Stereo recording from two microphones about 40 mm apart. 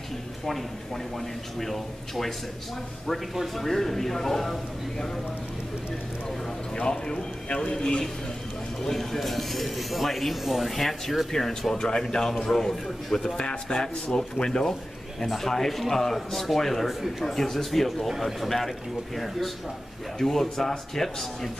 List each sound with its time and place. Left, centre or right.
1.6 s a man's voice: centre
3.3 s a man's voice: centre
6.7 s a man's voice: centre